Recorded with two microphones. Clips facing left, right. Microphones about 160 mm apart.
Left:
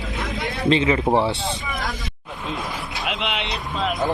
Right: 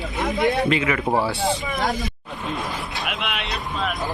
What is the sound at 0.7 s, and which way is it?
Speech, 25° left (ahead or behind).